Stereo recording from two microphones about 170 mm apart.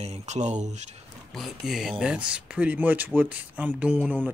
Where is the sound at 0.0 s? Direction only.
40° right (ahead or behind).